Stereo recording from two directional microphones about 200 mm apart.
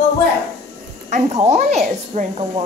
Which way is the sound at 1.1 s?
35° right (ahead or behind).